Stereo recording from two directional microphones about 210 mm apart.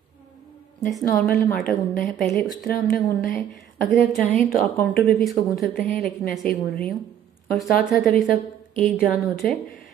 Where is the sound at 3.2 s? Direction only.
Centre (ahead or behind).